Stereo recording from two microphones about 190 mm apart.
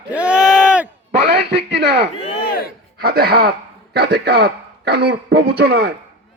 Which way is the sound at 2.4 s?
50° left (ahead or behind).